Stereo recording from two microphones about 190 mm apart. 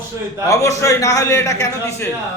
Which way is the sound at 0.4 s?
15° left (ahead or behind).